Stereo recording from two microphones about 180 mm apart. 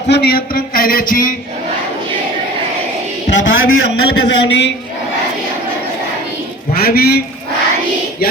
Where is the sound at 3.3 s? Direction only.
90° left.